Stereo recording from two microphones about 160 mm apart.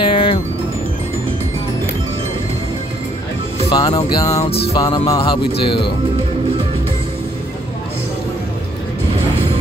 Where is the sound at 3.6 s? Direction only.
30° left (ahead or behind).